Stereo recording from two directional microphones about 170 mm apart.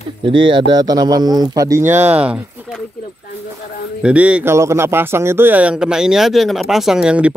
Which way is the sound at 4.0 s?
5° right (ahead or behind).